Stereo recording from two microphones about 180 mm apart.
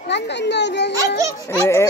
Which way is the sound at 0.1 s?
75° left (ahead or behind).